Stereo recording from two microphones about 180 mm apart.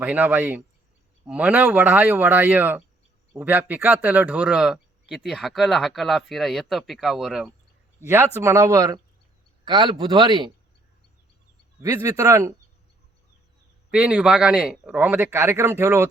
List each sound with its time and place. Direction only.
0.0 s speech: 10° right (ahead or behind)
8.0 s speech: 15° right (ahead or behind)
11.8 s speech: 15° right (ahead or behind)
13.9 s speech: 5° right (ahead or behind)